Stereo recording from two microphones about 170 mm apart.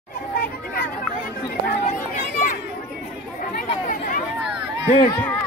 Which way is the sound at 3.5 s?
55° left (ahead or behind).